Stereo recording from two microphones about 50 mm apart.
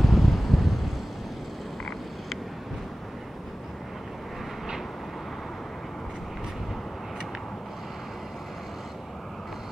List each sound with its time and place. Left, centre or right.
0.0 s vehicle: centre